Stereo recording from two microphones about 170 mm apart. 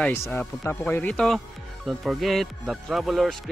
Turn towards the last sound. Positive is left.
turn(degrees=0)  # may be behind; listen again after turning